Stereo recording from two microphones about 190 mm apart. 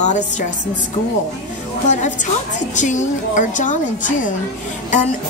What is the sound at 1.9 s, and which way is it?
A woman's voice, 40° left (ahead or behind).